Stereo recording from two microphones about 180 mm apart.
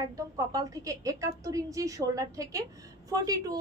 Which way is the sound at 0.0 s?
20° right (ahead or behind).